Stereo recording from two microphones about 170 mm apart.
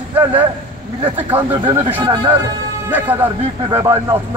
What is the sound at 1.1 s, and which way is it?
Speech, 10° right (ahead or behind).